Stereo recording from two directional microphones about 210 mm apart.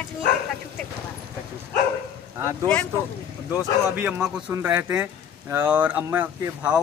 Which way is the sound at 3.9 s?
5° right (ahead or behind).